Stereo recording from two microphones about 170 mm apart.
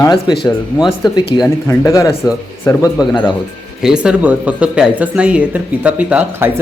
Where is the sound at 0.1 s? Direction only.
25° left (ahead or behind).